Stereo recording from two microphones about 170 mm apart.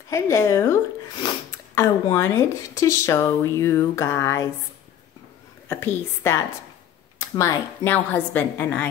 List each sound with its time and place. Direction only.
0.1 s speech: 15° left (ahead or behind)
5.7 s speech: 15° left (ahead or behind)